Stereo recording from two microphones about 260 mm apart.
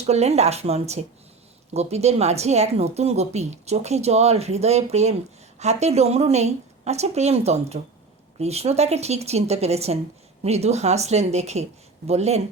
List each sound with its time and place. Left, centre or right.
0.0 s a woman's voice: right